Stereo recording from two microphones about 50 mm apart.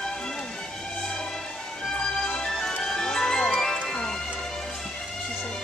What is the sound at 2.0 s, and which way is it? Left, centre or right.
Music, centre.